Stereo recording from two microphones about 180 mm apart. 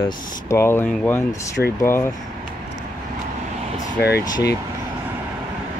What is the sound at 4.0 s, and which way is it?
Speech, 65° left (ahead or behind).